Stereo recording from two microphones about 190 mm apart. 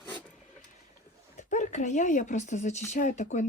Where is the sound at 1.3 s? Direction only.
40° left (ahead or behind).